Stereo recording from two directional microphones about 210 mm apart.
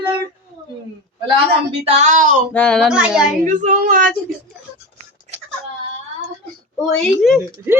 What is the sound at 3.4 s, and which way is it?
Speech, 40° right (ahead or behind).